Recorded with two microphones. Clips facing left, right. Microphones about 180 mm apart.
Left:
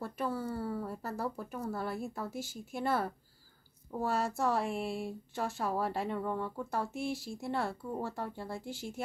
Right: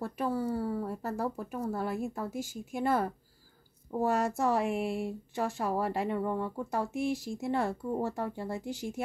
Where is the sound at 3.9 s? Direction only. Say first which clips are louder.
Right 4 dB; 10° right (ahead or behind).